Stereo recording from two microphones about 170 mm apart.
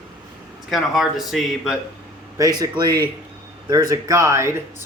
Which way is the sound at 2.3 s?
20° right (ahead or behind).